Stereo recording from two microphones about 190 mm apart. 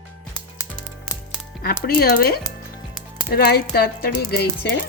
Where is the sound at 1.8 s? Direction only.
50° left (ahead or behind).